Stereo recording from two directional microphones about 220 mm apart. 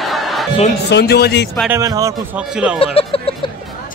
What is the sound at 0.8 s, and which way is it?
Speech, 50° left (ahead or behind).